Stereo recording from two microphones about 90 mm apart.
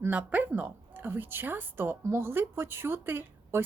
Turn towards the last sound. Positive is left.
turn(degrees=-25)  # may be behind; listen again after turning